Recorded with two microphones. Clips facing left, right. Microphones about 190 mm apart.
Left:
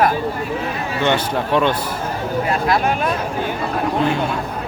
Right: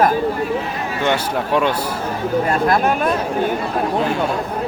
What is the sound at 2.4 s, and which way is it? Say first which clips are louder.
Speech: right 1 dB; 45° right (ahead or behind).